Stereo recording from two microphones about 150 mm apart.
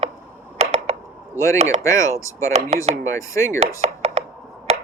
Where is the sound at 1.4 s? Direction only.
20° left (ahead or behind).